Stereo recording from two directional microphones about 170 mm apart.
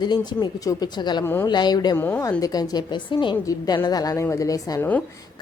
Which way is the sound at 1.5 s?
25° left (ahead or behind).